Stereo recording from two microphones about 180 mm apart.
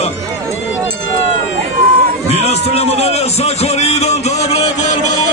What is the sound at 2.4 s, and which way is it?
A man's voice, 35° left (ahead or behind).